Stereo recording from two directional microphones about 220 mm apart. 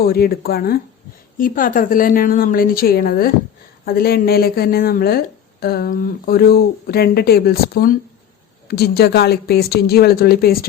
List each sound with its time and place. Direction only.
0.0 s a woman's voice: 45° left (ahead or behind)